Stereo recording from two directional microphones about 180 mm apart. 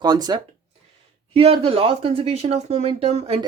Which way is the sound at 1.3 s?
30° right (ahead or behind).